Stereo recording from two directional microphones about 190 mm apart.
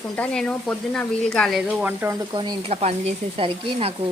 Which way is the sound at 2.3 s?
25° right (ahead or behind).